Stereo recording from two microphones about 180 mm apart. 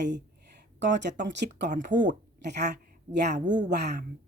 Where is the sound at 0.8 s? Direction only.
75° right (ahead or behind).